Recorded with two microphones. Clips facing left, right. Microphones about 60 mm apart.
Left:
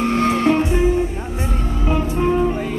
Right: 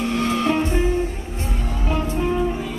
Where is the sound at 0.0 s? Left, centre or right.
Left.